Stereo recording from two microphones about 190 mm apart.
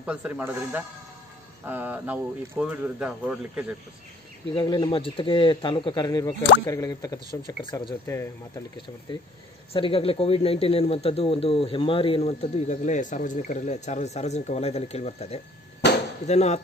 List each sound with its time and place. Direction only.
0.0 s speech: 5° right (ahead or behind)
4.6 s speech: 25° left (ahead or behind)
9.7 s speech: 30° left (ahead or behind)
15.8 s chop: 65° left (ahead or behind)
16.3 s speech: 35° left (ahead or behind)